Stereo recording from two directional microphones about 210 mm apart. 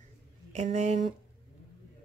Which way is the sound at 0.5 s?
35° right (ahead or behind).